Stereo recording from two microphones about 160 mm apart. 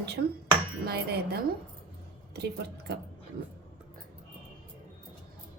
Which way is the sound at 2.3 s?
90° right.